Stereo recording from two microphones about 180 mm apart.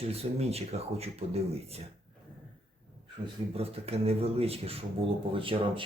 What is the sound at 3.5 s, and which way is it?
A man's voice, 35° right (ahead or behind).